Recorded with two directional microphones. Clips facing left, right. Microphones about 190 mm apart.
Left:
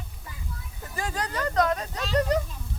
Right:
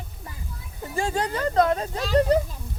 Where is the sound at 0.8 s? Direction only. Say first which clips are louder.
Right 6 dB; 30° right (ahead or behind).